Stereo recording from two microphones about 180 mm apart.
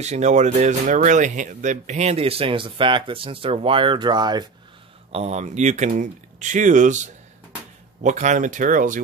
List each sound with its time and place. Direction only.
0.0 s speech: 40° right (ahead or behind); by 4.5 s 25° right (ahead or behind)
5.1 s speech: 35° right (ahead or behind)